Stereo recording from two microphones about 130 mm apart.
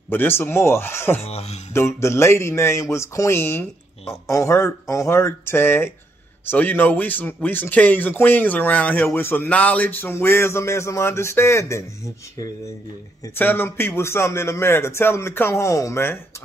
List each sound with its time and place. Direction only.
0.1 s speech: 15° left (ahead or behind)
1.2 s a sound: 55° left (ahead or behind)
1.7 s a man's voice: 20° left (ahead or behind)
13.4 s a man's voice: 15° left (ahead or behind)